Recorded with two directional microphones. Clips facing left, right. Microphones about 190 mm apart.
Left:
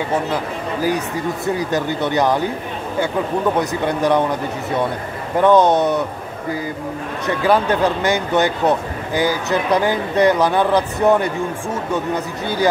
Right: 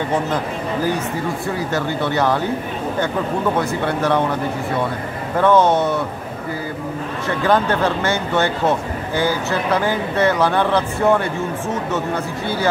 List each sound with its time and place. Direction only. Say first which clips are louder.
1.4 s speech: left 2 dB; 15° left (ahead or behind)
3.5 s speech: left 1 dB; 15° left (ahead or behind)
5.4 s speech: left 2 dB; 15° left (ahead or behind)
7.2 s speech: left 1 dB; 10° left (ahead or behind)